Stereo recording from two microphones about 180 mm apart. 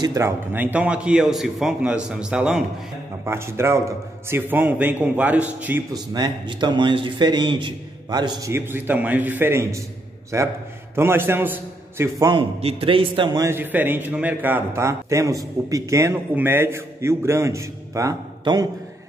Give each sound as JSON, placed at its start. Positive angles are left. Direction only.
{"t": 0.0, "sound": "a man's voice", "side_deg": -15}
{"t": 5.9, "sound": "a man's voice", "side_deg": -25}
{"t": 12.3, "sound": "a man's voice", "side_deg": -30}